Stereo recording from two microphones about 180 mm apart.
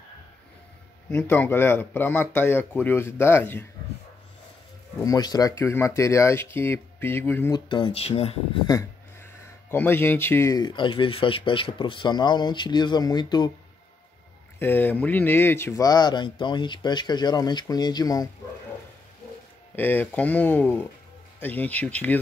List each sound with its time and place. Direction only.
1.1 s speech: 10° left (ahead or behind)
5.0 s speech: 20° left (ahead or behind)
7.7 s speech: 30° left (ahead or behind)
9.7 s speech: 10° left (ahead or behind)
14.6 s speech: 10° left (ahead or behind)
19.7 s speech: 10° left (ahead or behind)